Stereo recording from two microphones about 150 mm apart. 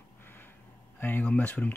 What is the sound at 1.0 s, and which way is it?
Speech, 15° left (ahead or behind).